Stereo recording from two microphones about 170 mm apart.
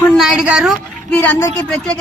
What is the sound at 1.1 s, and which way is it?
Speech, 10° left (ahead or behind).